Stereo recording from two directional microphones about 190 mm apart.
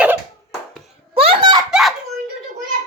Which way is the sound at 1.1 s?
30° right (ahead or behind).